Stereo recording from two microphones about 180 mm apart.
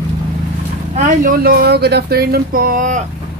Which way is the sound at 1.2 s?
55° right (ahead or behind).